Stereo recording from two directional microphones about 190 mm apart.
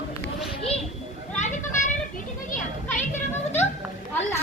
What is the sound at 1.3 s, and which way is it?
Children playing, 40° left (ahead or behind).